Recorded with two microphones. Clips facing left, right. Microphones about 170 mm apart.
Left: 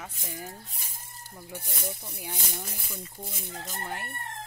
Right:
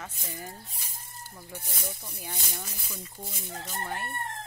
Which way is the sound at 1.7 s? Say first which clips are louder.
Left 2 dB; 15° left (ahead or behind).